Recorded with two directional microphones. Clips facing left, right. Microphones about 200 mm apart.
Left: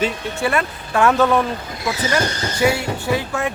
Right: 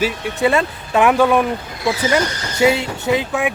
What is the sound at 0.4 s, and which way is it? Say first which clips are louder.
Speech: right 5 dB; 20° right (ahead or behind).